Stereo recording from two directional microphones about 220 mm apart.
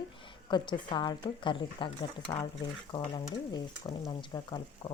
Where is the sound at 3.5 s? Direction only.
20° left (ahead or behind).